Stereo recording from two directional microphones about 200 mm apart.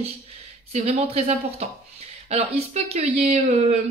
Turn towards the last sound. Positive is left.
turn(degrees=-35)  # may be behind; listen again after turning